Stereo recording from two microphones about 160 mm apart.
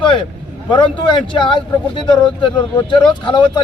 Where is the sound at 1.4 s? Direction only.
30° left (ahead or behind).